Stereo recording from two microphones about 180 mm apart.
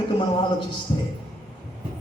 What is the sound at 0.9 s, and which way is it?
Speech, 25° left (ahead or behind).